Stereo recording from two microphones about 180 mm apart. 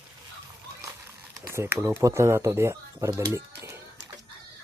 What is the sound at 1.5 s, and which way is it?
Speech, 15° right (ahead or behind).